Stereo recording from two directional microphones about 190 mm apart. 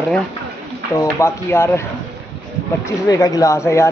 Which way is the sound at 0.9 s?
15° left (ahead or behind).